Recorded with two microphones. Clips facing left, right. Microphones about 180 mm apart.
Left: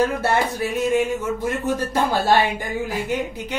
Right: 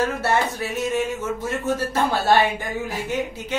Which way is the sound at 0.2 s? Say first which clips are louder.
Left 1 dB; 15° left (ahead or behind).